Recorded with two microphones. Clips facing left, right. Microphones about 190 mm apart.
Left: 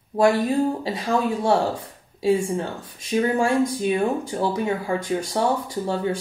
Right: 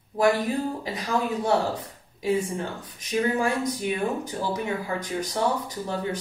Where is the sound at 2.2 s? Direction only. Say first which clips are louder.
Left 5 dB; 35° left (ahead or behind).